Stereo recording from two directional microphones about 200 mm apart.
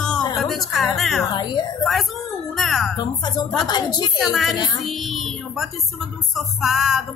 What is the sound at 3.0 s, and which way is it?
A woman's voice, 20° left (ahead or behind).